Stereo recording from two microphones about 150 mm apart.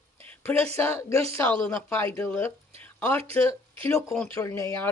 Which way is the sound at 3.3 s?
20° left (ahead or behind).